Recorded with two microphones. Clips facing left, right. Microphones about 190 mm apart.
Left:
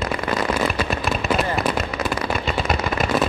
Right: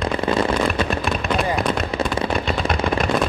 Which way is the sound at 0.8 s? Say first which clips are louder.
Right 1 dB; centre (ahead or behind).